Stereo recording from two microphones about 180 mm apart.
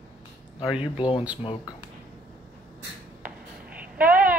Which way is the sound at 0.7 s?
30° left (ahead or behind).